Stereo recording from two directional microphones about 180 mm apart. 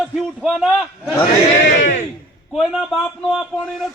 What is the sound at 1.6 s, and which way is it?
Speech, 45° left (ahead or behind).